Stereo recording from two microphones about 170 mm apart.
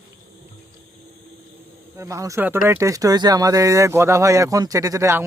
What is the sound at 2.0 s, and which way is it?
Speech, 20° right (ahead or behind).